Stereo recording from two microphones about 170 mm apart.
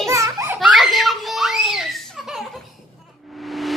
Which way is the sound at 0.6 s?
Centre (ahead or behind).